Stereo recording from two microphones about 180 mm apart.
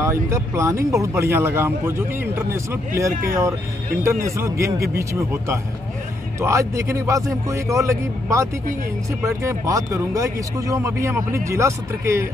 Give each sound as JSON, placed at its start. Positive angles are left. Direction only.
{"t": 0.0, "sound": "speech", "side_deg": -15}